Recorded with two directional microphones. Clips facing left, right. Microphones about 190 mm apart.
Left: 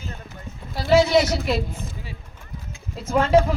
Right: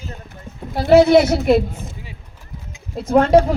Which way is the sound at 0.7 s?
55° right (ahead or behind).